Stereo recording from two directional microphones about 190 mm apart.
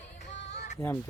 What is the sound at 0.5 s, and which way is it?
Music, 40° left (ahead or behind).